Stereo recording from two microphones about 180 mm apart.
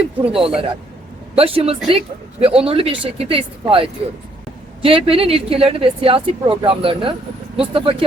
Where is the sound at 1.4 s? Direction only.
30° right (ahead or behind).